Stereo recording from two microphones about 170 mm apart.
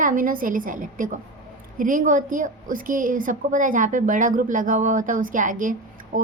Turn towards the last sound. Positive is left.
turn(degrees=-50)  # may be behind; listen again after turning